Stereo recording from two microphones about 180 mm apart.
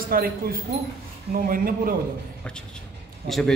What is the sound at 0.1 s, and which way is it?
Speech, 55° right (ahead or behind).